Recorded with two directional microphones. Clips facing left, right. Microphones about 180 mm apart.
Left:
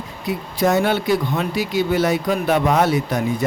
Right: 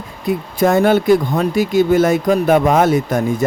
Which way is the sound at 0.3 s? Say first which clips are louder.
Right 4 dB; 50° right (ahead or behind).